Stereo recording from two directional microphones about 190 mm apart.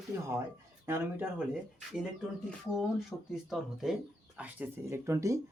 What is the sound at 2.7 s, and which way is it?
Speech, centre (ahead or behind).